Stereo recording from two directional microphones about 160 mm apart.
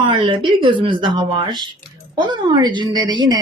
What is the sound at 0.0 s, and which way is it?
A man's voice, 30° right (ahead or behind).